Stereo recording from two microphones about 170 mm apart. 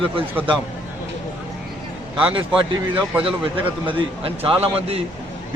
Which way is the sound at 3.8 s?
35° right (ahead or behind).